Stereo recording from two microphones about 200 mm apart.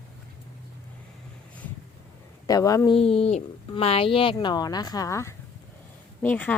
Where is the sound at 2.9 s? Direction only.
30° left (ahead or behind).